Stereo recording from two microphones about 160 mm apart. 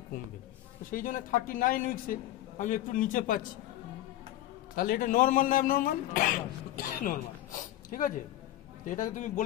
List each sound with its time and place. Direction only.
0.9 s a man's voice: 60° left (ahead or behind)
4.7 s a man's voice: 65° left (ahead or behind)